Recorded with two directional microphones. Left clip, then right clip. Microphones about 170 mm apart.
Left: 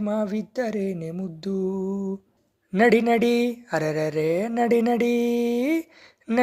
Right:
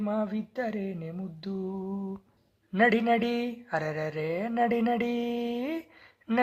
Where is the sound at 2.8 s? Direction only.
50° left (ahead or behind).